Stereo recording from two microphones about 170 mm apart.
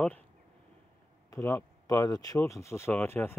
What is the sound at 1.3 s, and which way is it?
Speech, 15° left (ahead or behind).